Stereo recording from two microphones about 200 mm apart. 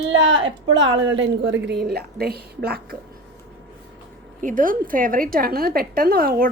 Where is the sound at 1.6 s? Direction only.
55° right (ahead or behind).